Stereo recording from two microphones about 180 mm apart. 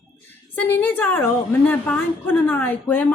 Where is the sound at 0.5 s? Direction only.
10° left (ahead or behind).